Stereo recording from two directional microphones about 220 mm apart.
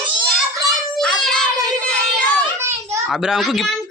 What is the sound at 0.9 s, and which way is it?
Child singing, centre (ahead or behind).